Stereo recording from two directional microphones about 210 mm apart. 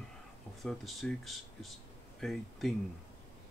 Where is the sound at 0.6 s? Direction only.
Centre (ahead or behind).